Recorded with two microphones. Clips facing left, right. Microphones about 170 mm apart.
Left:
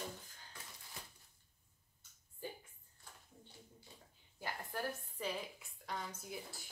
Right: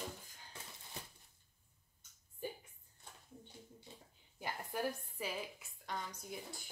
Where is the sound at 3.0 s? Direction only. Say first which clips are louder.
Right 2 dB; 25° right (ahead or behind).